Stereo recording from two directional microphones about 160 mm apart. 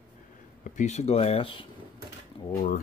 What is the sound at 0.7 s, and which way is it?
Speech, 50° left (ahead or behind).